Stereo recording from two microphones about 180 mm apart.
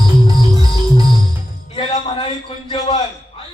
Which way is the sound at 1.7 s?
30° left (ahead or behind).